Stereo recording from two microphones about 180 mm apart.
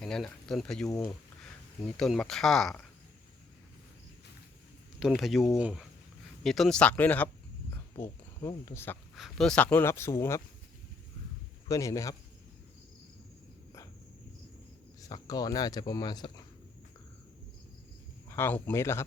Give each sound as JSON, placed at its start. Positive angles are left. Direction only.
{"t": 0.0, "sound": "speech", "side_deg": 5}
{"t": 2.0, "sound": "speech", "side_deg": 5}
{"t": 4.9, "sound": "speech", "side_deg": 0}
{"t": 9.1, "sound": "speech", "side_deg": 0}
{"t": 11.7, "sound": "speech", "side_deg": 20}
{"t": 15.1, "sound": "speech", "side_deg": 20}
{"t": 18.3, "sound": "speech", "side_deg": 15}